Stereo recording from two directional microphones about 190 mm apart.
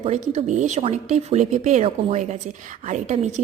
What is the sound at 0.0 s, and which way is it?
A woman's voice, 35° right (ahead or behind).